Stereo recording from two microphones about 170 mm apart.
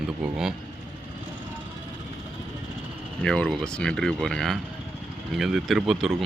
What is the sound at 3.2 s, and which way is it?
Speech, 5° left (ahead or behind).